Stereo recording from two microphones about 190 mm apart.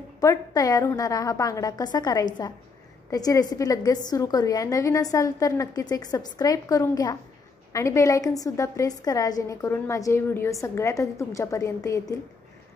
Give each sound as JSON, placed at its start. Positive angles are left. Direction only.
{"t": 0.2, "sound": "a woman's voice", "side_deg": 15}